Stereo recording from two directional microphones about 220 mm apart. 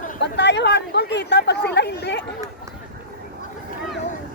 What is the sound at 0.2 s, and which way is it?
Speech, 50° left (ahead or behind).